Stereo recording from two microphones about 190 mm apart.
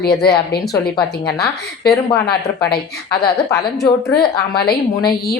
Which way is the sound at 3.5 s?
20° left (ahead or behind).